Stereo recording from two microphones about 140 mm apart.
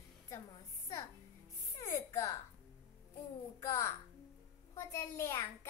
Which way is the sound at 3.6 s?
20° left (ahead or behind).